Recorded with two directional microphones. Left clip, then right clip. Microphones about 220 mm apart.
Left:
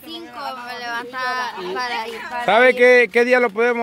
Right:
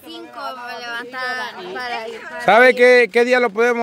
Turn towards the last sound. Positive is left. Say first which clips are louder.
# right 1 dB
turn(degrees=-20)  # may be behind; listen again after turning